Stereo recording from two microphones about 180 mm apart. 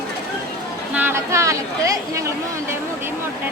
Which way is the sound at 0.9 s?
15° right (ahead or behind).